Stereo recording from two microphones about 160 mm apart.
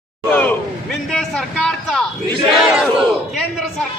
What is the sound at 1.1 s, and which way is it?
Speech, 5° left (ahead or behind).